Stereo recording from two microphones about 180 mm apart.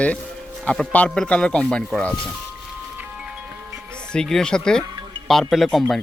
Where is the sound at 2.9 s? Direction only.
5° right (ahead or behind).